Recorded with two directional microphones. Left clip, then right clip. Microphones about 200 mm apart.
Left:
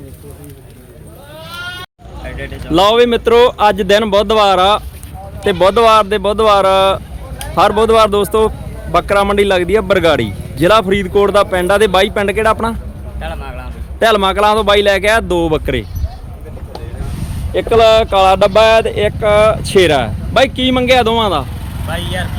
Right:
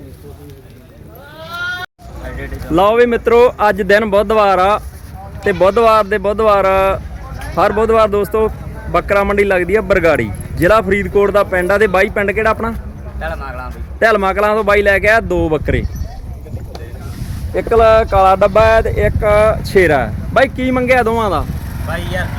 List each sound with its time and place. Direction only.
2.7 s a man's voice: 15° left (ahead or behind)
17.5 s speech: 20° left (ahead or behind); by 21.4 s 5° left (ahead or behind)